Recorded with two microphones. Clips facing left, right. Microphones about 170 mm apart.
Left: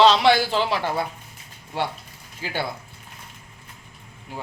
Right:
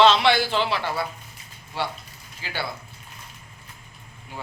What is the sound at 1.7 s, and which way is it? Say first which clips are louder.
Speech: left 2 dB; 55° left (ahead or behind).